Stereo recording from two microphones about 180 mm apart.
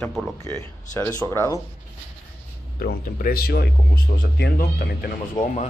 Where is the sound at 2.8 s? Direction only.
55° left (ahead or behind).